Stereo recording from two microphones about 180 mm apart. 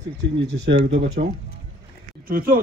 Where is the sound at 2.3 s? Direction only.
50° right (ahead or behind).